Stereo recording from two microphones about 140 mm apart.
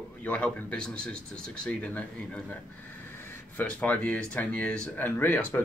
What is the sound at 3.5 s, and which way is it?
Speech, 10° left (ahead or behind).